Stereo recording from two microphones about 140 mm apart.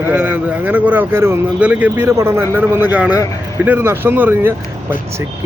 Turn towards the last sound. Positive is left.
turn(degrees=-15)  # may be behind; listen again after turning